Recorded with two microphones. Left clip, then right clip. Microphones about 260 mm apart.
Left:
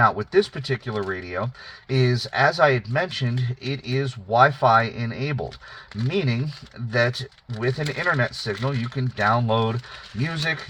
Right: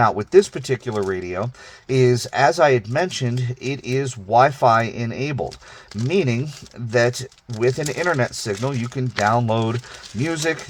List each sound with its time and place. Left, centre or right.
0.0 s speech: right
7.6 s speech: right